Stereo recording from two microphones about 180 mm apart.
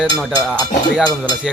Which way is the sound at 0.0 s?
Centre (ahead or behind).